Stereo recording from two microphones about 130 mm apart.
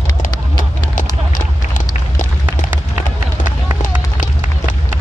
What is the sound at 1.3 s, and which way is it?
Run, 90° left.